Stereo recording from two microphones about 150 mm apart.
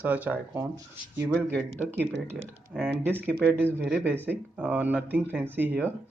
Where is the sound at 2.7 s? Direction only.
5° right (ahead or behind).